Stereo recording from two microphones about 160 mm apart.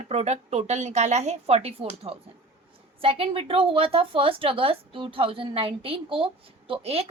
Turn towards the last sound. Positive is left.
turn(degrees=-40)  # may be behind; listen again after turning